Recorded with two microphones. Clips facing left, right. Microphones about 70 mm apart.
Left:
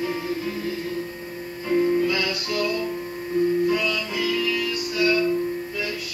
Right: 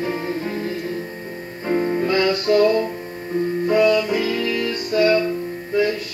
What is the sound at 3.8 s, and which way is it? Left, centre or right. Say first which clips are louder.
Music: right 8 dB; right.